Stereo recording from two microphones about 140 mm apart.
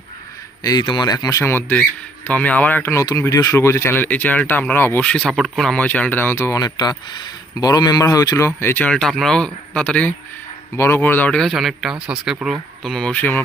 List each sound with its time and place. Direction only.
0.6 s speech: 30° left (ahead or behind); by 9.0 s 15° left (ahead or behind)
9.0 s speech: centre (ahead or behind)